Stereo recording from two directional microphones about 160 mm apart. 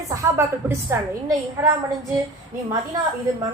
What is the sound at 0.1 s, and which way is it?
A woman's voice, 20° right (ahead or behind).